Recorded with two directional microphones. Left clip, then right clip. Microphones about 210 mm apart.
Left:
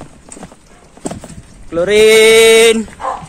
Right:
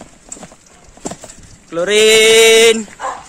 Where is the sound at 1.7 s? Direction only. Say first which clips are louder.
Left 2 dB; 10° right (ahead or behind).